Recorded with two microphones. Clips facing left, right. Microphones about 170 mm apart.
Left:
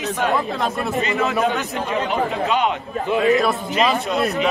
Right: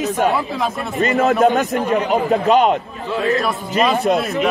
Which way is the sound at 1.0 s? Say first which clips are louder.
Right 7 dB; 40° right (ahead or behind).